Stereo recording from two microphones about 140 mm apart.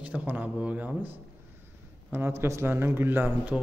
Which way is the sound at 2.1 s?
15° right (ahead or behind).